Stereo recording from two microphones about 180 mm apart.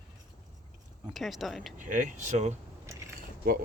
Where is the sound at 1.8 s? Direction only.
45° right (ahead or behind).